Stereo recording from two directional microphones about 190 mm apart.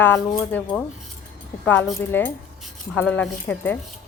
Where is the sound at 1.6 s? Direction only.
10° left (ahead or behind).